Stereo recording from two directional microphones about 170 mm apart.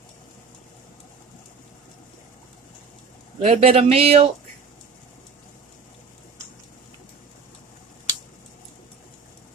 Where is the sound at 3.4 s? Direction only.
35° right (ahead or behind).